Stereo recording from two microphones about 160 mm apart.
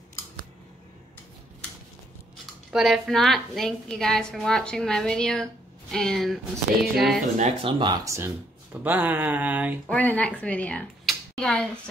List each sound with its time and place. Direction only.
2.7 s a woman's voice: centre (ahead or behind)
7.3 s speech: 45° right (ahead or behind)
7.8 s speech: 20° right (ahead or behind)
9.8 s speech: 10° left (ahead or behind)